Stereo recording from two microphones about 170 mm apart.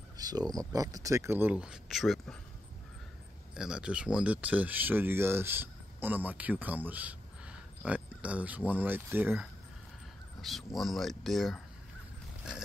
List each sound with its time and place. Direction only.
0.2 s speech: 20° right (ahead or behind); by 2.3 s centre (ahead or behind)
3.5 s speech: 5° right (ahead or behind)
10.4 s speech: centre (ahead or behind)